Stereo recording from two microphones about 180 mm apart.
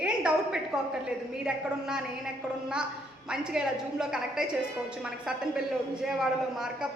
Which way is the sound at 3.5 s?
5° right (ahead or behind).